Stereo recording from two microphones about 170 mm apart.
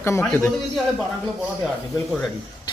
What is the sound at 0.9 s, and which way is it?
Speech, centre (ahead or behind).